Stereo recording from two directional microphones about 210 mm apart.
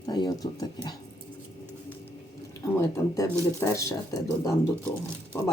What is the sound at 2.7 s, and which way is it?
Speech, 15° left (ahead or behind).